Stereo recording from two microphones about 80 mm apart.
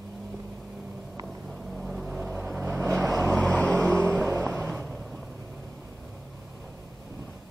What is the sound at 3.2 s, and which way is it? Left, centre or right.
Vehicle, centre.